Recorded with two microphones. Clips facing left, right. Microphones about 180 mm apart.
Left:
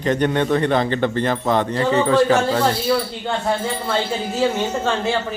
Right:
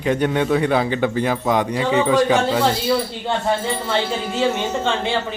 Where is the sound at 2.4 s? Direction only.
Centre (ahead or behind).